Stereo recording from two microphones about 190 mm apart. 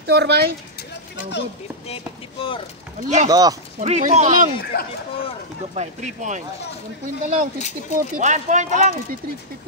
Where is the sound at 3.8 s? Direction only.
35° right (ahead or behind).